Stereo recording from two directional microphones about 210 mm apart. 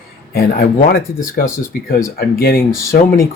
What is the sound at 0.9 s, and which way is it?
Speech, 45° left (ahead or behind).